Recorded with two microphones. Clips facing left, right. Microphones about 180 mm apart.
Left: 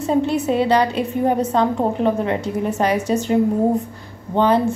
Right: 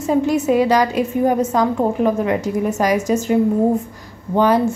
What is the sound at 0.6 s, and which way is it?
A woman's voice, 30° left (ahead or behind).